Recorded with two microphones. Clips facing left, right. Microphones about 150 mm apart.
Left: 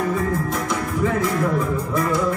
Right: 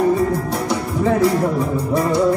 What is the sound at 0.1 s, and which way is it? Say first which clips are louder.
Music: right 4 dB; 35° right (ahead or behind).